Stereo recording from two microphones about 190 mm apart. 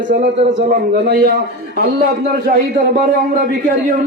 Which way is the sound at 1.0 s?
60° right (ahead or behind).